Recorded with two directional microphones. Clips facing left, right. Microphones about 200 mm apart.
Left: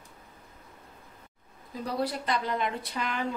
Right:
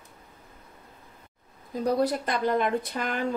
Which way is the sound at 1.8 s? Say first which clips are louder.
Right 6 dB; 45° right (ahead or behind).